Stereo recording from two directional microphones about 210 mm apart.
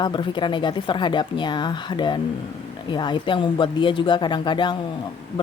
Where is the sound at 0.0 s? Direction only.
20° left (ahead or behind).